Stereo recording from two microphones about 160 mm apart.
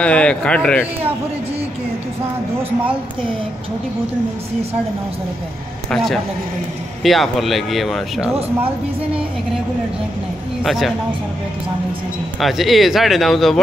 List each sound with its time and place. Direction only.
0.0 s speech: 5° left (ahead or behind)
7.0 s speech: centre (ahead or behind)
10.6 s a man's voice: centre (ahead or behind)
12.4 s speech: centre (ahead or behind)